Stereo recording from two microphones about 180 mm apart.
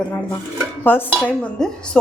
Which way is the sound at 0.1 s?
10° left (ahead or behind).